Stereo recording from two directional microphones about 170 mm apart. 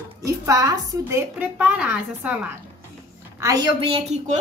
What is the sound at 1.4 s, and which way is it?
Speech, 10° right (ahead or behind).